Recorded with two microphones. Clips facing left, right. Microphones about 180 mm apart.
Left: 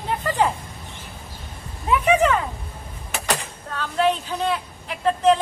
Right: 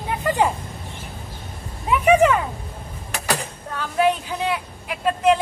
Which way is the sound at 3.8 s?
10° right (ahead or behind).